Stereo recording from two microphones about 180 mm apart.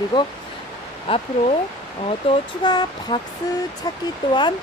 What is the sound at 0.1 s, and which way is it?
Speech, 20° left (ahead or behind).